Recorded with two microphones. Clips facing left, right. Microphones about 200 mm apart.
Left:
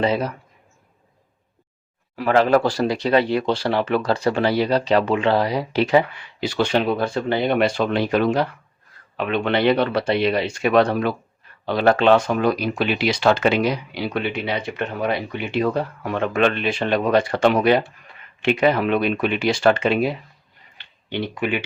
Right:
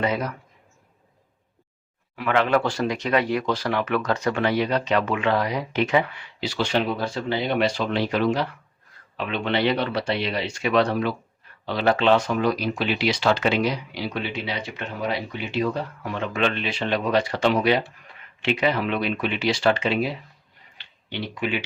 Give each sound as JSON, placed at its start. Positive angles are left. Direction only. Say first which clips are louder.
{"t": 0.0, "sound": "speech", "louder": "left 4 dB", "side_deg": 30}
{"t": 2.1, "sound": "speech", "louder": "left 5 dB", "side_deg": 35}
{"t": 6.4, "sound": "speech", "louder": "left 4 dB", "side_deg": 55}
{"t": 20.7, "sound": "a sound", "louder": "left 6 dB", "side_deg": 50}